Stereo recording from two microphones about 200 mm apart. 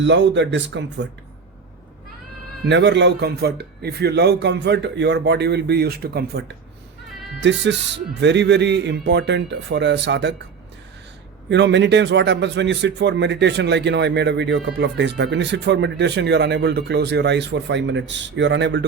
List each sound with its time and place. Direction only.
0.0 s a man's voice: 65° right (ahead or behind)
2.6 s a man's voice: 65° right (ahead or behind)
7.4 s a man's voice: 60° right (ahead or behind)
11.4 s a man's voice: 60° right (ahead or behind)